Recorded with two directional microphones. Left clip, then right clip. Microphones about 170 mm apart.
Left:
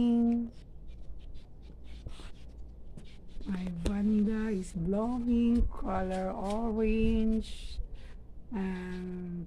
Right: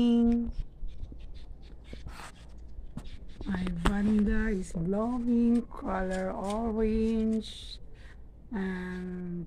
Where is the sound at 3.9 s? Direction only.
25° right (ahead or behind).